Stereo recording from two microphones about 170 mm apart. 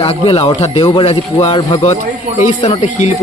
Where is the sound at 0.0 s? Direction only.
35° left (ahead or behind).